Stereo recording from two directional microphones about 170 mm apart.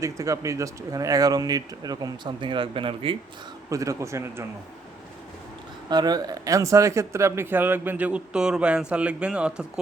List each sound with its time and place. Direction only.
0.0 s speech: 20° right (ahead or behind)
3.7 s speech: 20° right (ahead or behind)
5.9 s speech: 25° right (ahead or behind); by 9.8 s 5° right (ahead or behind)